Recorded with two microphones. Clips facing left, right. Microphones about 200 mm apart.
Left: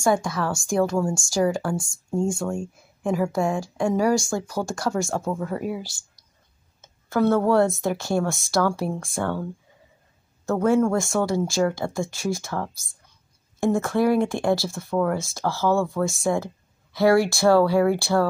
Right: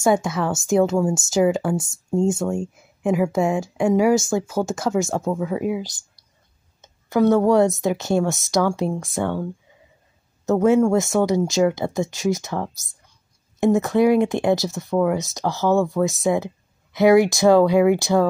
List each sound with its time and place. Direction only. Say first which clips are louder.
0.0 s speech: right 3 dB; 20° right (ahead or behind)
5.4 s speech: right 4 dB; 5° right (ahead or behind)
6.8 s speech: right 3 dB; 15° right (ahead or behind)